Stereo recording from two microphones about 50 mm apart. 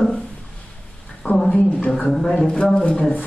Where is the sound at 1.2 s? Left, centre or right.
Centre.